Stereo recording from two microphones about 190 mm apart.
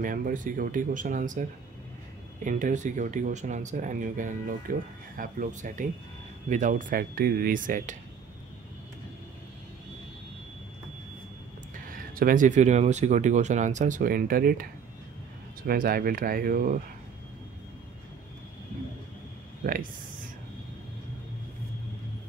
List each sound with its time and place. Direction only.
0.0 s speech: 45° right (ahead or behind)
2.4 s speech: 40° right (ahead or behind)
11.7 s speech: 45° right (ahead or behind)
19.6 s speech: 45° right (ahead or behind)